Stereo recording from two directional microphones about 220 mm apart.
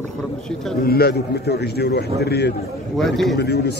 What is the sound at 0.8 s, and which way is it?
A man's voice, 45° left (ahead or behind).